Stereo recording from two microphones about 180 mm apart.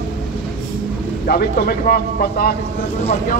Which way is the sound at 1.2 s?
55° left (ahead or behind).